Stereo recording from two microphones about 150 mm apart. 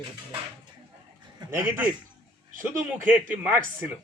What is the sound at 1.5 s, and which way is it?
Speech, 15° right (ahead or behind).